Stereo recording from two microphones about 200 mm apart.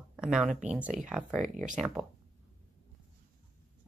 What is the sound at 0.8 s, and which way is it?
Speech, 40° right (ahead or behind).